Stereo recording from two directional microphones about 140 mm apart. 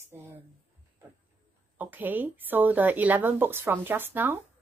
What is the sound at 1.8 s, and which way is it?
A woman's voice, 15° right (ahead or behind).